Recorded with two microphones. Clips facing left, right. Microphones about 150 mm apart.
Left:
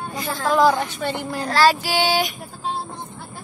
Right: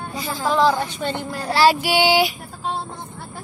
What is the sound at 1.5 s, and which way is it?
Child singing, 10° right (ahead or behind).